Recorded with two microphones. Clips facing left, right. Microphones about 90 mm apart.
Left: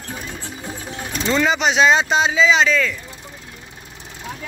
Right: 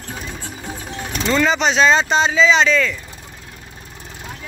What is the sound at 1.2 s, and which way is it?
Speech, 15° left (ahead or behind).